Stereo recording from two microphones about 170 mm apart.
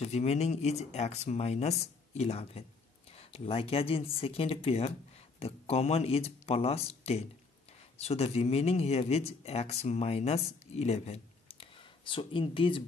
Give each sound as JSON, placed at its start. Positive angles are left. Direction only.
{"t": 0.0, "sound": "speech", "side_deg": 40}